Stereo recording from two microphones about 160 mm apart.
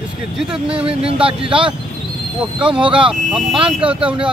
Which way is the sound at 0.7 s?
35° right (ahead or behind).